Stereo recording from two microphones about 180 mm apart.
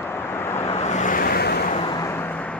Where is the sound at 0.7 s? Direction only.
40° left (ahead or behind); by 1.7 s 60° left (ahead or behind).